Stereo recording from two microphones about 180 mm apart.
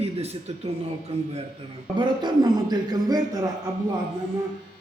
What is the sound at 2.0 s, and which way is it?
Speech, 25° right (ahead or behind).